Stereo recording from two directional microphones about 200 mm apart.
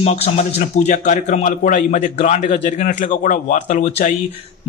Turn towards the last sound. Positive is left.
turn(degrees=35)  # may be behind; listen again after turning